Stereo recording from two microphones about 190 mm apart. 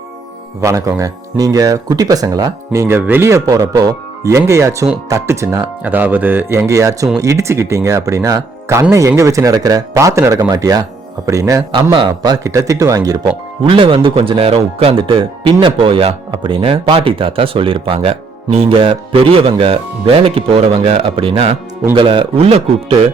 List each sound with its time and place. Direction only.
0.6 s speech: 15° right (ahead or behind); by 23.0 s 30° right (ahead or behind)